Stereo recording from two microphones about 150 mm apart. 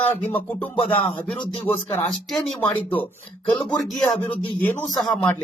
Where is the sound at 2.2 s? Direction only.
Centre (ahead or behind).